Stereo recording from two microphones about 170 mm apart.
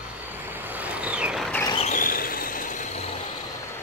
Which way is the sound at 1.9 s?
55° left (ahead or behind).